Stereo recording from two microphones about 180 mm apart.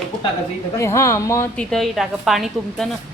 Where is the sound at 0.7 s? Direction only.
15° left (ahead or behind).